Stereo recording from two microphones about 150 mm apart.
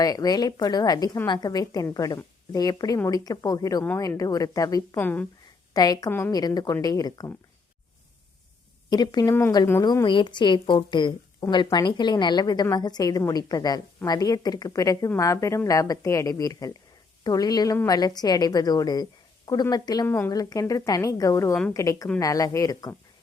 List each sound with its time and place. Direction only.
0.0 s a woman's voice: 25° left (ahead or behind)
4.9 s speech: 10° left (ahead or behind)
5.7 s a woman's voice: 25° left (ahead or behind)
6.1 s speech: 15° left (ahead or behind)
6.3 s a woman's voice: 25° left (ahead or behind)
8.9 s a woman's voice: 25° left (ahead or behind)
20.1 s a woman's voice: 15° left (ahead or behind)